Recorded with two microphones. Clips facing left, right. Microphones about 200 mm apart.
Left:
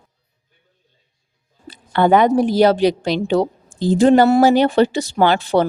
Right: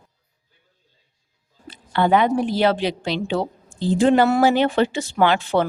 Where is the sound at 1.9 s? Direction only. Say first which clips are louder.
Left 4 dB; 45° left (ahead or behind).